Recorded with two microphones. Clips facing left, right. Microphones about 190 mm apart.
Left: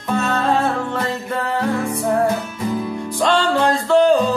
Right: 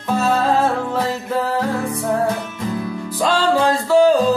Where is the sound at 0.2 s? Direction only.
5° right (ahead or behind).